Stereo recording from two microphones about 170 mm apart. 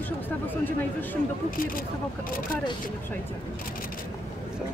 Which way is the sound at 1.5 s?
55° left (ahead or behind).